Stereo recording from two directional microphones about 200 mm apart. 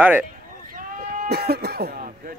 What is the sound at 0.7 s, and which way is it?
Sheep, 45° right (ahead or behind).